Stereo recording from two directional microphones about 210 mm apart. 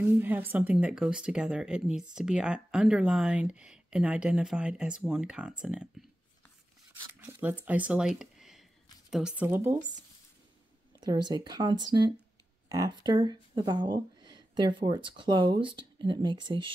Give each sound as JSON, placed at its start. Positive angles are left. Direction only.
{"t": 0.0, "sound": "speech", "side_deg": -10}
{"t": 11.0, "sound": "speech", "side_deg": -20}